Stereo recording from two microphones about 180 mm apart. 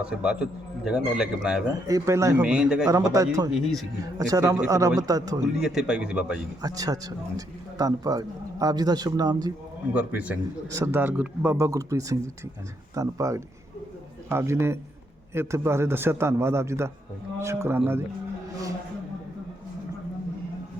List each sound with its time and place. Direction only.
0.0 s a man's voice: 5° right (ahead or behind)
1.9 s a man's voice: 15° right (ahead or behind)
2.4 s a man's voice: 5° right (ahead or behind)
2.8 s a man's voice: 20° right (ahead or behind)
3.5 s a man's voice: centre (ahead or behind)
4.3 s a man's voice: 15° right (ahead or behind)
5.5 s a man's voice: 5° right (ahead or behind)
6.6 s speech: 20° right (ahead or behind)
9.9 s a man's voice: 10° right (ahead or behind)